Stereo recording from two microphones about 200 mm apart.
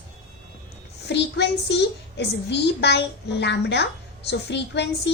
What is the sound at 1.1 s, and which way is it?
A woman's voice, 60° left (ahead or behind).